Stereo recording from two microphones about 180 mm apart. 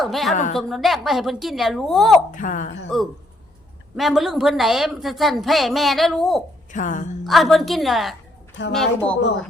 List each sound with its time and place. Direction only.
0.0 s a woman's voice: centre (ahead or behind)
2.3 s speech: 45° left (ahead or behind)
3.9 s a woman's voice: centre (ahead or behind)
6.7 s speech: 45° left (ahead or behind)
7.3 s a woman's voice: centre (ahead or behind)